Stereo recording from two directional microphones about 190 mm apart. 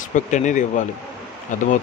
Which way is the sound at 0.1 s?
40° left (ahead or behind).